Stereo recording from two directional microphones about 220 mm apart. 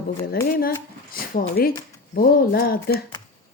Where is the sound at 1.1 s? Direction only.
40° left (ahead or behind).